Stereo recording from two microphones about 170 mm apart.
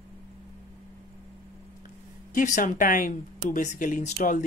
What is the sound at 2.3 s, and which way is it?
Speech, 50° left (ahead or behind).